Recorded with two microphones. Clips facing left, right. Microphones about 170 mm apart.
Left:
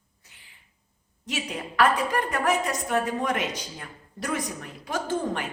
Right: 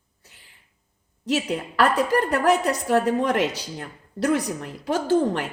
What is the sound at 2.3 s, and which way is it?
Speech, 70° right (ahead or behind).